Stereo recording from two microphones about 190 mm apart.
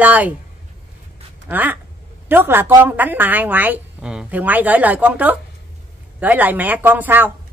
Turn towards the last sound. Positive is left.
turn(degrees=-10)  # may be behind; listen again after turning